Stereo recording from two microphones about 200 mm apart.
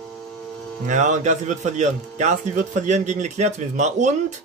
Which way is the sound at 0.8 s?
40° right (ahead or behind).